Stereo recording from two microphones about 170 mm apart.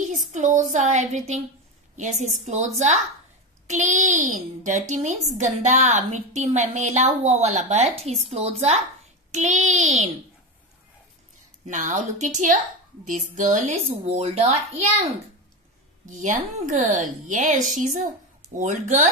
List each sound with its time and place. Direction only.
0.3 s a woman's voice: 45° right (ahead or behind)
11.6 s a child's voice: 45° right (ahead or behind)